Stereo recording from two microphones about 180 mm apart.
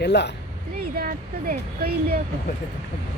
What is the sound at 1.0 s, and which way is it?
Speech, 55° right (ahead or behind).